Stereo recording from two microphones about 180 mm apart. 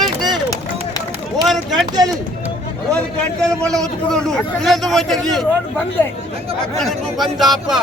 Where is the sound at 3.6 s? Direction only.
5° left (ahead or behind).